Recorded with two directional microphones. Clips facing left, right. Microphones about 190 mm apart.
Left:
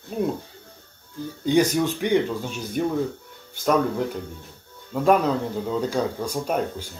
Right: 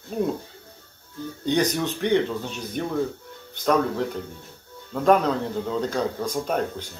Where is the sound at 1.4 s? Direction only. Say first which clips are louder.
Left 3 dB; 10° left (ahead or behind).